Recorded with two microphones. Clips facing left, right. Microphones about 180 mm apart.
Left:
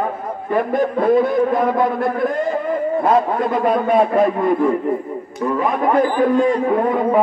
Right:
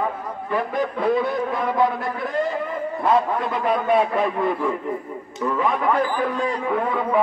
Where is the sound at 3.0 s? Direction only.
45° left (ahead or behind).